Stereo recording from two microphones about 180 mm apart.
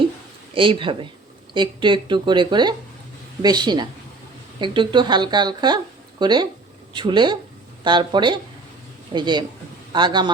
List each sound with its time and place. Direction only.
0.5 s speech: 30° right (ahead or behind)